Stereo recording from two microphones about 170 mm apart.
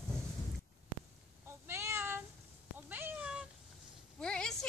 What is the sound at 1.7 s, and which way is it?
Meow, 15° right (ahead or behind).